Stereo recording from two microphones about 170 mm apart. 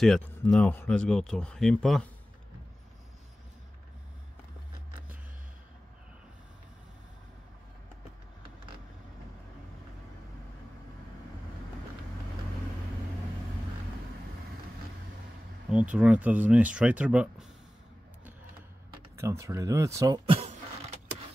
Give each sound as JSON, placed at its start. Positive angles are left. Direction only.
{"t": 0.0, "sound": "speech", "side_deg": 5}
{"t": 15.7, "sound": "speech", "side_deg": -5}
{"t": 19.1, "sound": "speech", "side_deg": -15}
{"t": 20.2, "sound": "a sound", "side_deg": -35}